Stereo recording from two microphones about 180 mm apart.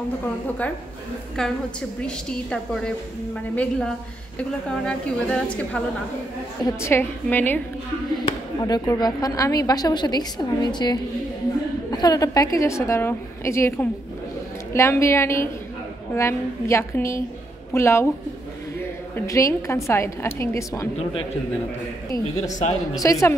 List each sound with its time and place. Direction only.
1.3 s a woman's voice: 5° left (ahead or behind)
6.8 s a woman's voice: 10° left (ahead or behind)
8.3 s a woman's voice: 20° left (ahead or behind)
19.1 s a woman's voice: 15° left (ahead or behind)
22.4 s speech: 40° left (ahead or behind)
22.9 s a woman's voice: 15° left (ahead or behind)